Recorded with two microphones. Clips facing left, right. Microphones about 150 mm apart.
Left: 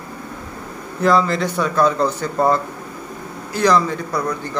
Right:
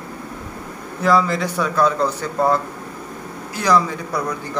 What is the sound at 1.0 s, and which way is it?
A man's voice, 5° right (ahead or behind).